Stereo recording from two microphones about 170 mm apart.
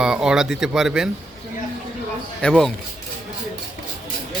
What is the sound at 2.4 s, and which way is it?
Speech, 5° left (ahead or behind).